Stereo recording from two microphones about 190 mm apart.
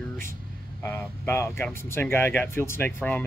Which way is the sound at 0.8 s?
10° left (ahead or behind).